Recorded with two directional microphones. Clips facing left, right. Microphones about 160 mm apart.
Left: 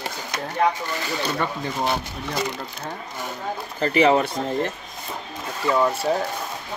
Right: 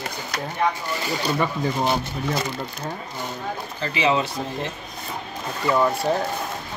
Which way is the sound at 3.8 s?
45° left (ahead or behind).